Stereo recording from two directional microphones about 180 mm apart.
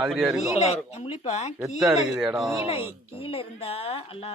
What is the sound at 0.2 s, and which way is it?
Speech, 5° right (ahead or behind).